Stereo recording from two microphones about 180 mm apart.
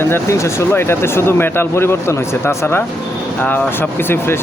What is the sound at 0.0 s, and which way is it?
Speech, 15° left (ahead or behind).